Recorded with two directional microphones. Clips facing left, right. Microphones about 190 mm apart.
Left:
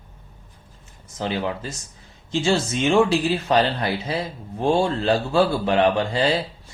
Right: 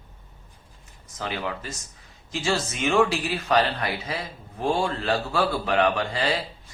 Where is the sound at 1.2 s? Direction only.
30° left (ahead or behind).